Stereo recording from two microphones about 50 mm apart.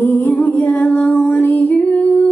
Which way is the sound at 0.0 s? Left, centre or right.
Left.